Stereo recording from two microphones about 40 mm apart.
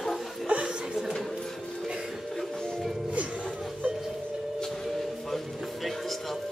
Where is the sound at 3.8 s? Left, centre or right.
Right.